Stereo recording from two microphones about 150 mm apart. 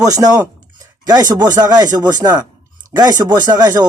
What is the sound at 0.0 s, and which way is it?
Speech, 25° right (ahead or behind).